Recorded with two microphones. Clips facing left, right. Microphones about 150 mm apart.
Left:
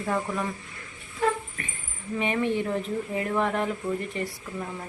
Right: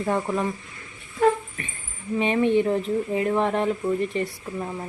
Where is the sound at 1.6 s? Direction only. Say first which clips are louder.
Right 2 dB; 25° right (ahead or behind).